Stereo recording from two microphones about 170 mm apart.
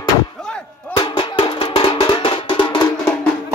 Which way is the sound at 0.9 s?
30° left (ahead or behind).